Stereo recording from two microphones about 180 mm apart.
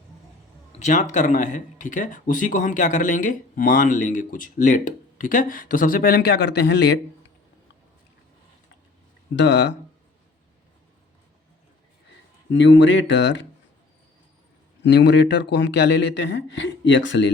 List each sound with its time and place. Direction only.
0.9 s speech: 45° left (ahead or behind); by 7.0 s 70° left (ahead or behind)
9.3 s a man's voice: 80° left
12.5 s a man's voice: 90° left
14.8 s a man's voice: 75° left (ahead or behind)